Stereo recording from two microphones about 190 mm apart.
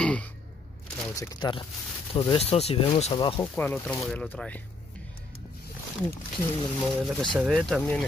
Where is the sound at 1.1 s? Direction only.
15° left (ahead or behind).